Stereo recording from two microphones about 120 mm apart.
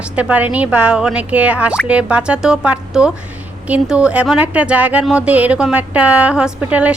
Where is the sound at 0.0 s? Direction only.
10° right (ahead or behind).